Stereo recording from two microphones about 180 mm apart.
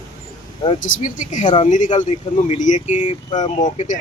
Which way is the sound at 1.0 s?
45° left (ahead or behind).